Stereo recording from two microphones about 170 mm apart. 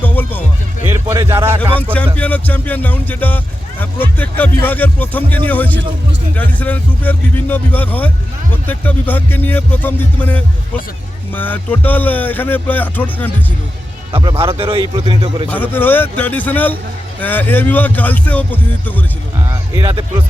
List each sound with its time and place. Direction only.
0.0 s music: 10° left (ahead or behind)
0.9 s a man's voice: 15° right (ahead or behind)
2.1 s speech: 10° left (ahead or behind)
14.1 s a man's voice: 30° right (ahead or behind)
15.4 s speech: 10° left (ahead or behind)